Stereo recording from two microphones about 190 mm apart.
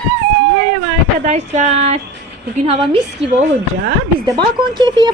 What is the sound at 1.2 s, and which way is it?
Speech, 40° right (ahead or behind).